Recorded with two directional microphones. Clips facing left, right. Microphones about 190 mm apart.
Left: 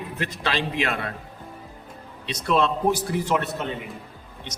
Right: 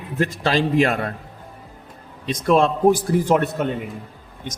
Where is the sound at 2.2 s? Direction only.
45° right (ahead or behind).